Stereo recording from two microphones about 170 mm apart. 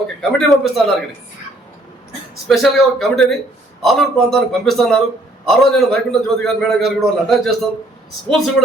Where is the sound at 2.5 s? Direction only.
Centre (ahead or behind).